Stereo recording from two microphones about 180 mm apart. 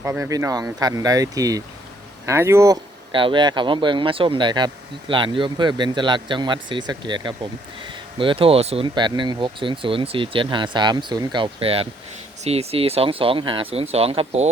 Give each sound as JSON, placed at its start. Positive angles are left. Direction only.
{"t": 0.0, "sound": "speech", "side_deg": -15}